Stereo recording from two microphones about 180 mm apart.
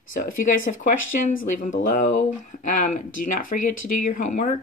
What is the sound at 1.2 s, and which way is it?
Speech, 45° left (ahead or behind).